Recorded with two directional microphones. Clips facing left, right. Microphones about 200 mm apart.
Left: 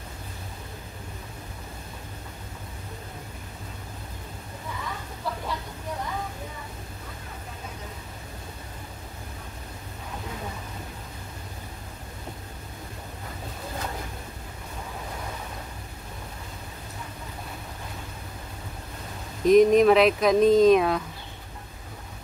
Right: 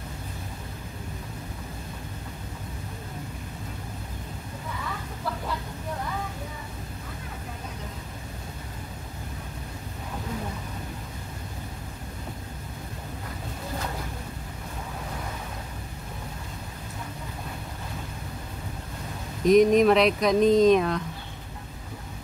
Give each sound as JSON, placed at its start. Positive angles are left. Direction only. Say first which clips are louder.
{"t": 19.4, "sound": "speech", "louder": "left 1 dB", "side_deg": 0}